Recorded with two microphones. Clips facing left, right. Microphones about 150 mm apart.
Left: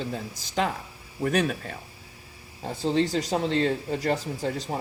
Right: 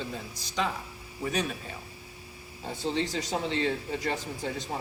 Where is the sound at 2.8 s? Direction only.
45° left (ahead or behind).